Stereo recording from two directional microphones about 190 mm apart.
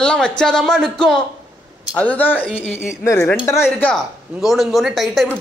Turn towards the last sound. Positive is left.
turn(degrees=0)  # may be behind; listen again after turning